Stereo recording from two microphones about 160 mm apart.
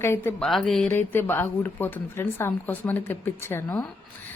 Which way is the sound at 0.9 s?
15° left (ahead or behind).